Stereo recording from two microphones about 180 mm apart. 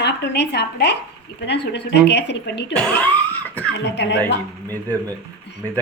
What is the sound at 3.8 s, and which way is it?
Speech, 75° left (ahead or behind).